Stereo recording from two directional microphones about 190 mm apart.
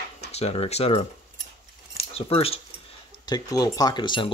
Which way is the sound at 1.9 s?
30° left (ahead or behind).